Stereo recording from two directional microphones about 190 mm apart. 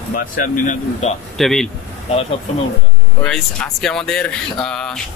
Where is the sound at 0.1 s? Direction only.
40° left (ahead or behind).